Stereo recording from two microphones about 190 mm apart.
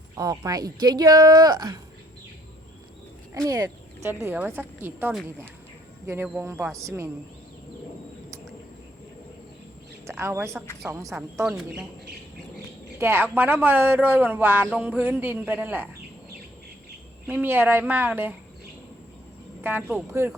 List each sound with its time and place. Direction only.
0.2 s speech: 20° right (ahead or behind)
3.4 s speech: 15° right (ahead or behind)
10.1 s a woman's voice: 15° right (ahead or behind)
12.5 s bird: 10° right (ahead or behind)
13.3 s speech: 10° right (ahead or behind)
17.2 s speech: 10° right (ahead or behind)
19.6 s speech: 10° right (ahead or behind)